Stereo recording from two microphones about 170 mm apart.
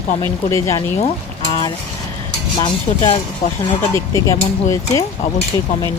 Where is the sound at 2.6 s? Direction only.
30° left (ahead or behind).